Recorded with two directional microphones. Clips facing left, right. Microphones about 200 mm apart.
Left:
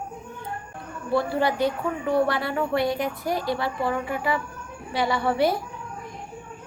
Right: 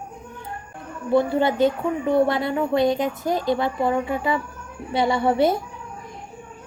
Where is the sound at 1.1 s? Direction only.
20° right (ahead or behind).